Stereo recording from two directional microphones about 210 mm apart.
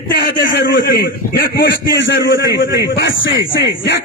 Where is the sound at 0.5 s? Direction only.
60° left (ahead or behind).